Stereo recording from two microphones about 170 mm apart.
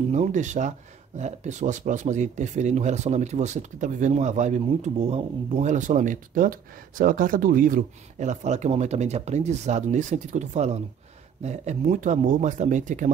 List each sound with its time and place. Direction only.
0.1 s speech: 45° right (ahead or behind)